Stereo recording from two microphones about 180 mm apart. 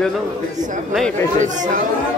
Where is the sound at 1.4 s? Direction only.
45° right (ahead or behind).